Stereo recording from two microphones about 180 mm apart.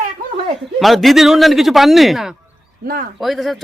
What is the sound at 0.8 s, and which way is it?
Speech, centre (ahead or behind).